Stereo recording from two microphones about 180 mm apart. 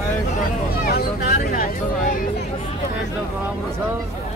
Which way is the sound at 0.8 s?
60° left (ahead or behind).